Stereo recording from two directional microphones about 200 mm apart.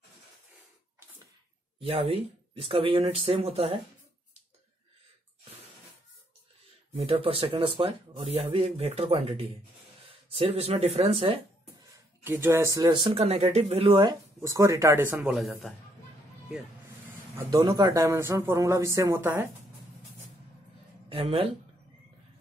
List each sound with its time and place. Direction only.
1.8 s speech: 30° right (ahead or behind)
6.9 s speech: 30° right (ahead or behind)
12.2 s speech: 10° right (ahead or behind)
17.1 s speech: 15° right (ahead or behind)
21.1 s speech: 25° right (ahead or behind)